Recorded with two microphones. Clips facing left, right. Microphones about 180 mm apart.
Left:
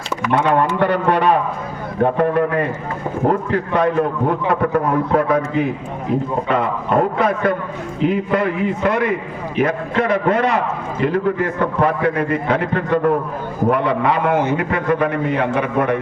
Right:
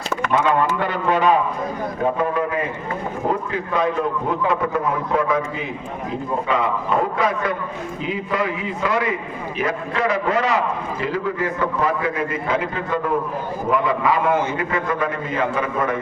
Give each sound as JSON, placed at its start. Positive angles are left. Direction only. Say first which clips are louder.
{"t": 0.8, "sound": "a man's voice", "louder": "left 4 dB", "side_deg": 65}
{"t": 6.5, "sound": "a man's voice", "louder": "left 3 dB", "side_deg": 60}